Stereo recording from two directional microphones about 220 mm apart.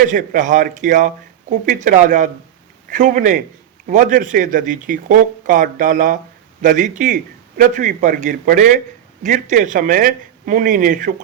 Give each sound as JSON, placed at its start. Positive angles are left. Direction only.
{"t": 0.1, "sound": "speech", "side_deg": -35}